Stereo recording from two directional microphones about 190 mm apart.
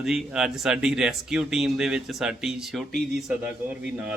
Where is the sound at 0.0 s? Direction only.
Centre (ahead or behind).